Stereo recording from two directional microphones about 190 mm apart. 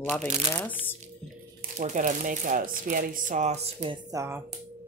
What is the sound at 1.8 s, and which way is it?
Speech, 45° right (ahead or behind).